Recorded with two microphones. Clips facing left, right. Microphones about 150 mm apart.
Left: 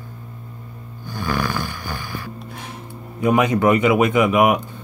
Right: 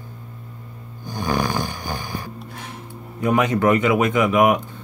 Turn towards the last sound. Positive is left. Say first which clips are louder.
# left 1 dB
turn(degrees=10)  # may be behind; listen again after turning